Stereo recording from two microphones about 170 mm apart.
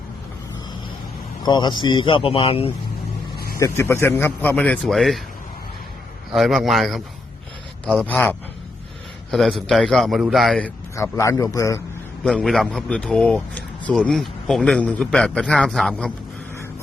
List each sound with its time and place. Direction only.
1.5 s speech: 25° left (ahead or behind)
3.3 s vehicle: 65° left (ahead or behind)
3.6 s a man's voice: 15° left (ahead or behind)
6.3 s a man's voice: centre (ahead or behind)
10.9 s a man's voice: 15° left (ahead or behind)
12.2 s a man's voice: centre (ahead or behind)